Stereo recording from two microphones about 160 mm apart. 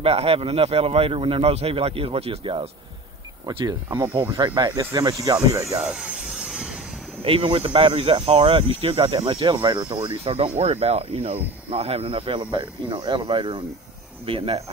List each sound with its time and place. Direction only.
0.0 s speech: 40° right (ahead or behind)
4.0 s speech: 15° right (ahead or behind)
5.8 s vehicle: 5° right (ahead or behind)
7.2 s speech: 35° right (ahead or behind)